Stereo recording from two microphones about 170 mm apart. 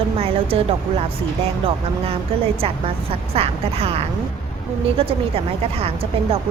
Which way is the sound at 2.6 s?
35° right (ahead or behind).